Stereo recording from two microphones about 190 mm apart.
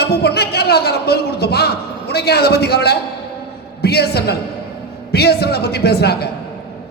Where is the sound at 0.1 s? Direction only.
60° left (ahead or behind).